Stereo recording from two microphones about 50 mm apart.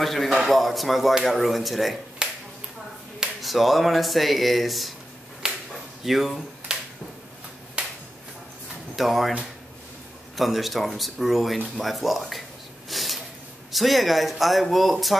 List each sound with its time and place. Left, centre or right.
0.0 s speech: centre
2.2 s finger snapping: centre
3.4 s speech: centre
5.7 s a sound: centre
6.7 s a sound: centre
8.9 s speech: centre
10.3 s speech: centre
12.9 s snort: centre
13.7 s speech: centre